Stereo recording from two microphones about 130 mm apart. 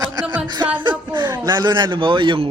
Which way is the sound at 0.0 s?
30° right (ahead or behind).